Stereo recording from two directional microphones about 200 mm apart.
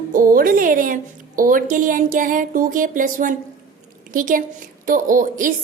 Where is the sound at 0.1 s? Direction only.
45° right (ahead or behind).